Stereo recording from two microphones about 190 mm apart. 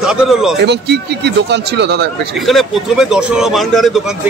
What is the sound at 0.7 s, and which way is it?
Speech, 60° right (ahead or behind).